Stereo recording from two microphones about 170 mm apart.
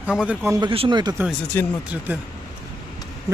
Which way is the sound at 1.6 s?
10° left (ahead or behind).